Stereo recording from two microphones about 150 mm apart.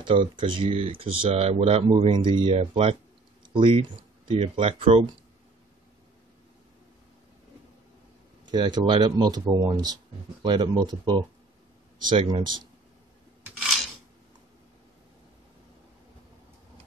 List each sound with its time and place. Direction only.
0.4 s speech: 35° right (ahead or behind)
8.5 s speech: 30° right (ahead or behind)